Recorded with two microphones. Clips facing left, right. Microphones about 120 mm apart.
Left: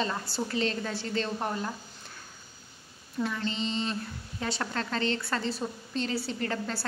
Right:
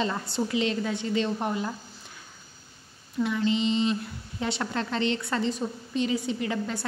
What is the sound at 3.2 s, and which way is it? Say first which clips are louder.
A woman's voice: right 6 dB; 15° right (ahead or behind).